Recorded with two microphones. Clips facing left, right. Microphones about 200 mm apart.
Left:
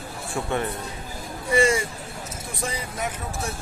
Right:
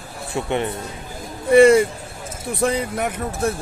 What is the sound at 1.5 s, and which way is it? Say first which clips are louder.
Speech: right 10 dB; 60° right (ahead or behind).